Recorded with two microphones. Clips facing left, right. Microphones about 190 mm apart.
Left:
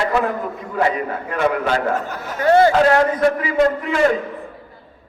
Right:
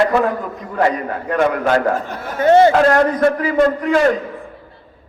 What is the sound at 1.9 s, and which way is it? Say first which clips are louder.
Speech: right 2 dB; 25° right (ahead or behind).